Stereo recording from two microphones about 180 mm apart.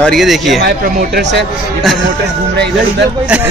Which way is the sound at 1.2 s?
75° right (ahead or behind).